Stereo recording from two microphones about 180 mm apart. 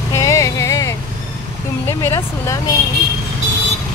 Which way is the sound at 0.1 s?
15° left (ahead or behind).